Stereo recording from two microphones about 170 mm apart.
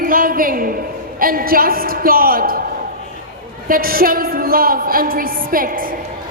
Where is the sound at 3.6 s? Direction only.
60° right (ahead or behind).